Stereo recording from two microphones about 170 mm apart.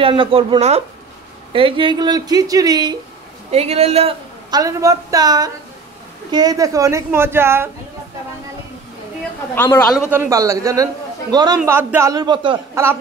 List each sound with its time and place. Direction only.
0.0 s a man's voice: 30° right (ahead or behind)
3.5 s speech: 40° right (ahead or behind)
4.5 s a man's voice: 20° right (ahead or behind)
9.6 s speech: 10° left (ahead or behind)
10.0 s a man's voice: 15° right (ahead or behind)